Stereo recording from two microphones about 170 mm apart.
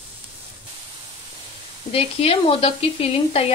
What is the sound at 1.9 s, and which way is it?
Speech, 35° left (ahead or behind).